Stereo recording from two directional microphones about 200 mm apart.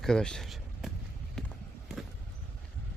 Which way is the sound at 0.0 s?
5° left (ahead or behind).